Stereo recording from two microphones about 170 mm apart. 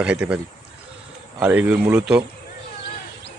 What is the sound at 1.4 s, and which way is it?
Speech, 10° right (ahead or behind).